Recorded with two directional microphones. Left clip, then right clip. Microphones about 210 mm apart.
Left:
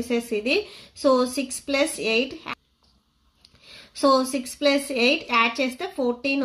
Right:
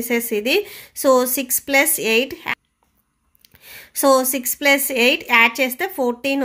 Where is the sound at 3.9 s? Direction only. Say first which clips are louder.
Right 4 dB; 45° right (ahead or behind).